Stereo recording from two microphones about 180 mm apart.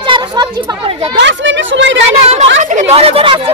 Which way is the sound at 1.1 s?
85° right.